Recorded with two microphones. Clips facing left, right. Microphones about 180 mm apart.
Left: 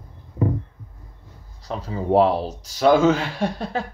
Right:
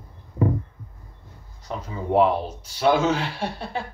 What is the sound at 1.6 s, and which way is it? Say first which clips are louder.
Speech: left 3 dB; 35° left (ahead or behind).